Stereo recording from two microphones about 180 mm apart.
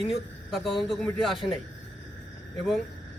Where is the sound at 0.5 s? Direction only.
Centre (ahead or behind).